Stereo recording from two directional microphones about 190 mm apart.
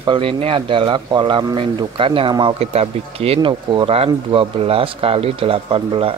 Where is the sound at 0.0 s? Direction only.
25° right (ahead or behind).